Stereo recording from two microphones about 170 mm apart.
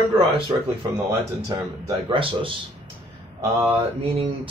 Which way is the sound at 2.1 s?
30° right (ahead or behind).